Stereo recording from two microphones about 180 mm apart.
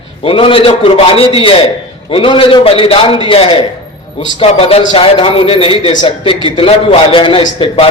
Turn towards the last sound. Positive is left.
turn(degrees=30)  # may be behind; listen again after turning